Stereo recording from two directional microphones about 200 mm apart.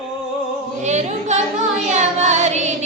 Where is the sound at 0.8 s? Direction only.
35° right (ahead or behind).